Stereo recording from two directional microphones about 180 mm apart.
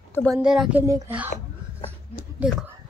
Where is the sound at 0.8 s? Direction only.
15° right (ahead or behind).